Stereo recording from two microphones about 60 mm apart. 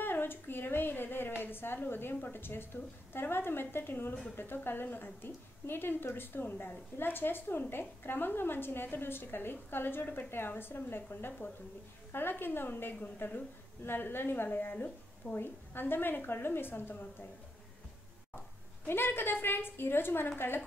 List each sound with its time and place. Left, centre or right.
0.0 s a sound: left
2.3 s a woman's voice: left
18.9 s a woman's voice: left